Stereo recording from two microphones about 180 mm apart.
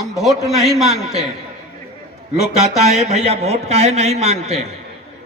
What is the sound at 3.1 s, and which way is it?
A man's voice, 35° right (ahead or behind).